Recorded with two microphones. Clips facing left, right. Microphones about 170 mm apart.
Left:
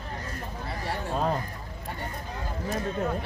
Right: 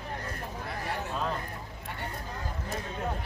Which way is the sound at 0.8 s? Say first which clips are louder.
Left 5 dB; 40° left (ahead or behind).